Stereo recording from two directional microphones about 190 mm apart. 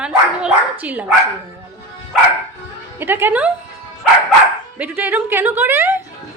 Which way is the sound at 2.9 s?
10° right (ahead or behind).